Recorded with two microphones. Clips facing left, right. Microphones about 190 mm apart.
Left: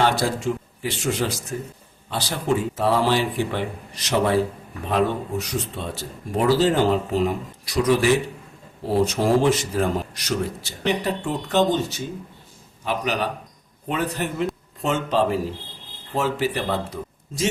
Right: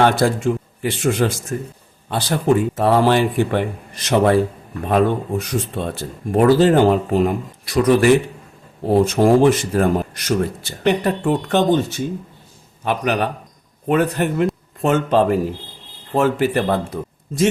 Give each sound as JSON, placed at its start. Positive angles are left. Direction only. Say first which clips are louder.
{"t": 0.0, "sound": "speech", "louder": "right 5 dB", "side_deg": -55}
{"t": 4.9, "sound": "a man's voice", "louder": "right 5 dB", "side_deg": -55}